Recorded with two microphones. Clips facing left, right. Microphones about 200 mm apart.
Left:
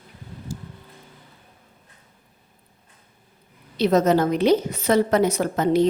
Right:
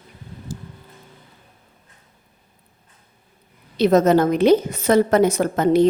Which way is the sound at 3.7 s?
50° right (ahead or behind).